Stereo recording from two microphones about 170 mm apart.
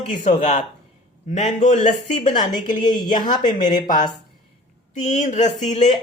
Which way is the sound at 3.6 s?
50° left (ahead or behind).